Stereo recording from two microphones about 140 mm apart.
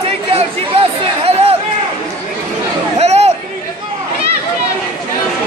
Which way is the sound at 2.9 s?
50° right (ahead or behind).